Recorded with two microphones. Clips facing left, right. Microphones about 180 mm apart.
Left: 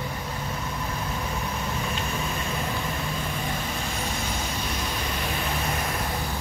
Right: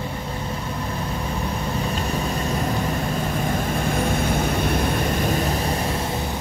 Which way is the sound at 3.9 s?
55° right (ahead or behind).